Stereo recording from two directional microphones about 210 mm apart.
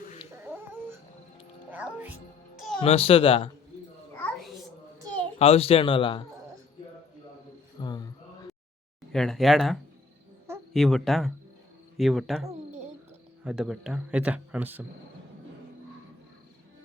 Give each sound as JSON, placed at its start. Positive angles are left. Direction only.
{"t": 0.4, "sound": "dog", "side_deg": -10}
{"t": 1.7, "sound": "music", "side_deg": -10}
{"t": 2.8, "sound": "a man's voice", "side_deg": 25}
{"t": 4.2, "sound": "a sound", "side_deg": 0}
{"t": 5.4, "sound": "a man's voice", "side_deg": 30}
{"t": 7.8, "sound": "a sound", "side_deg": 20}
{"t": 9.1, "sound": "speech", "side_deg": 0}
{"t": 12.5, "sound": "a sound", "side_deg": -30}
{"t": 13.4, "sound": "speech", "side_deg": -5}